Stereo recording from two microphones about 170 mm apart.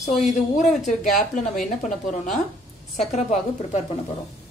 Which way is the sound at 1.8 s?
45° left (ahead or behind).